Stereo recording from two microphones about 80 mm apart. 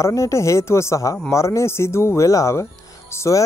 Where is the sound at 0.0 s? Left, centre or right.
Left.